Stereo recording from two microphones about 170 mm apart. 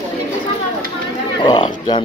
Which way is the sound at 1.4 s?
25° left (ahead or behind).